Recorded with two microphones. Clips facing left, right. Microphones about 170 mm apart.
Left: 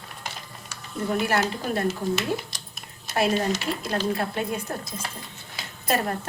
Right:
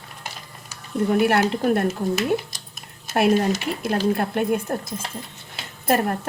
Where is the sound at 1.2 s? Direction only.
60° right (ahead or behind).